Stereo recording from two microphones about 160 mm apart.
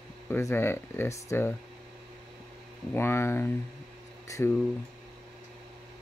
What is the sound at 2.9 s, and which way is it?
Speech, 15° left (ahead or behind).